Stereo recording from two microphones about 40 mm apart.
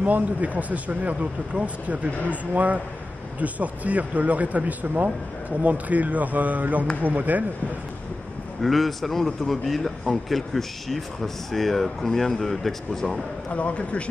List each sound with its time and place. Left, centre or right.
0.0 s speech: right
8.6 s a man's voice: centre
13.5 s a man's voice: left